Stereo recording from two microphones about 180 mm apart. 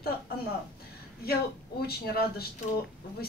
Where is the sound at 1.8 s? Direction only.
60° left (ahead or behind).